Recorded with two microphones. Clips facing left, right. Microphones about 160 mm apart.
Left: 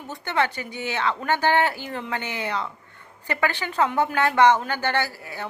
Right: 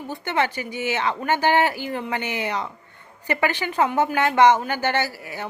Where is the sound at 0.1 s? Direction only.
15° right (ahead or behind).